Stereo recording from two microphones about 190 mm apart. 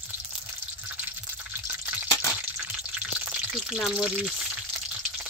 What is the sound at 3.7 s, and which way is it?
Speech, centre (ahead or behind).